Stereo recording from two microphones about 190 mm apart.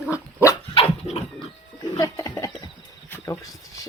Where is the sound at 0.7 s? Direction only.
30° left (ahead or behind).